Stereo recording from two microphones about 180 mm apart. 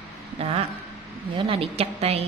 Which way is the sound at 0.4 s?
35° right (ahead or behind).